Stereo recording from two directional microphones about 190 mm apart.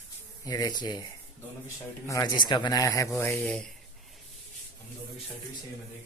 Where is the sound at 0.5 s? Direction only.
20° left (ahead or behind).